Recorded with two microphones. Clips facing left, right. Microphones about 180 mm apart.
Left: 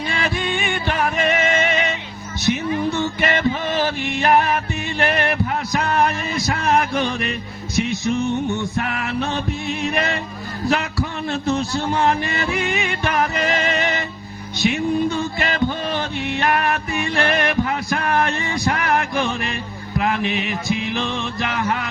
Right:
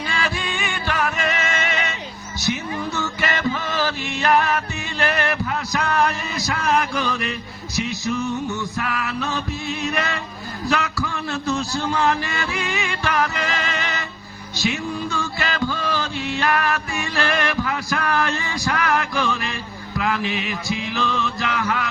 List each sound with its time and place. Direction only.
0.1 s music: 25° left (ahead or behind)
5.0 s a sound: 20° left (ahead or behind)
7.9 s music: 25° left (ahead or behind)
9.9 s music: 25° left (ahead or behind)
10.7 s a man's voice: 25° left (ahead or behind)
15.1 s music: 25° left (ahead or behind)
20.0 s speech: 20° left (ahead or behind)
20.9 s music: 25° left (ahead or behind)